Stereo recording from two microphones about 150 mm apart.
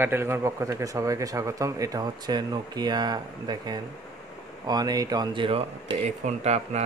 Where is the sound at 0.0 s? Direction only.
15° right (ahead or behind).